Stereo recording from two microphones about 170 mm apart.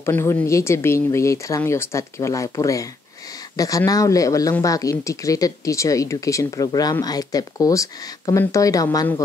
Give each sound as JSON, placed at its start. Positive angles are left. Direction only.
{"t": 0.0, "sound": "speech", "side_deg": 15}